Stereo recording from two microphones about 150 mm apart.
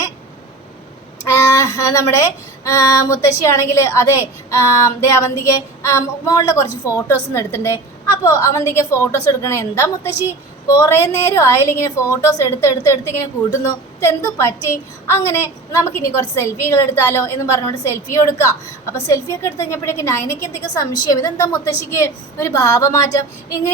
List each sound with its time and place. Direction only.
1.2 s a woman's voice: 20° left (ahead or behind)